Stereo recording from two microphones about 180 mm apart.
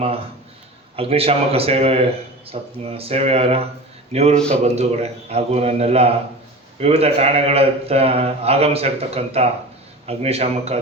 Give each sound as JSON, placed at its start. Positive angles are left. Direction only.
{"t": 0.9, "sound": "a man's voice", "side_deg": -35}